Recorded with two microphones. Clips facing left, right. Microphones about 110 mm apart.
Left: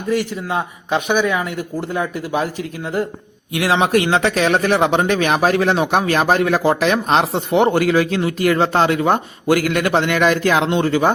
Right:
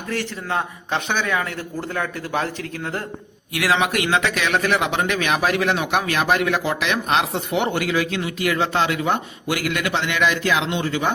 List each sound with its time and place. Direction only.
0.1 s a man's voice: 15° left (ahead or behind)
3.5 s speech: 25° left (ahead or behind); by 11.1 s 45° left (ahead or behind)